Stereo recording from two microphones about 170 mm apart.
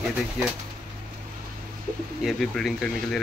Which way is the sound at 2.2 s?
Centre (ahead or behind).